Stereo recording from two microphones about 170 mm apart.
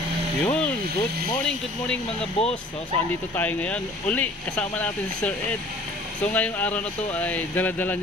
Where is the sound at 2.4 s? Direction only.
35° left (ahead or behind).